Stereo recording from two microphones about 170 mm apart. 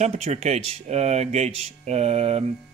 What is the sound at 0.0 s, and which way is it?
Speech, 40° right (ahead or behind).